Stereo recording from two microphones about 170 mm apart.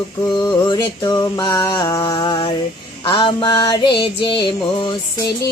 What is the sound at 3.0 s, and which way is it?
Music, 25° left (ahead or behind).